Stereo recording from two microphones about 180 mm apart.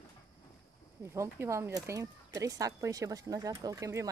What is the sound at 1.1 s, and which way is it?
Speech, 15° right (ahead or behind).